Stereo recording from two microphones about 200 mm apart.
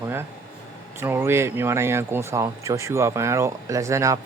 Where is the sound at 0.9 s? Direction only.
10° right (ahead or behind).